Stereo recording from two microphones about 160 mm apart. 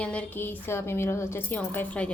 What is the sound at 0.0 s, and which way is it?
Speech, 5° left (ahead or behind).